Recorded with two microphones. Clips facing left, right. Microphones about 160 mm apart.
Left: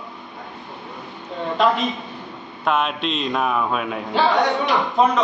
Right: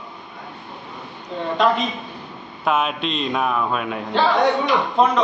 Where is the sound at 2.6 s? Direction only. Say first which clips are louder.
Even; centre (ahead or behind).